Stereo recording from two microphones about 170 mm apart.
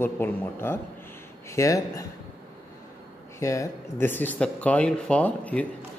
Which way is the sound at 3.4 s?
20° left (ahead or behind).